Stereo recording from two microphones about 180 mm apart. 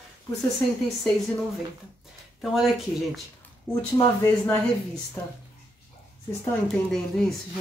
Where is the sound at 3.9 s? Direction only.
15° left (ahead or behind).